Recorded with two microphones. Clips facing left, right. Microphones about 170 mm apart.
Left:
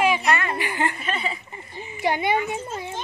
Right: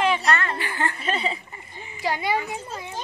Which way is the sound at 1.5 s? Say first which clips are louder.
Left 4 dB; 25° left (ahead or behind).